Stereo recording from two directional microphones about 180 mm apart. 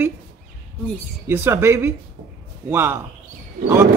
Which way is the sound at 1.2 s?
10° right (ahead or behind).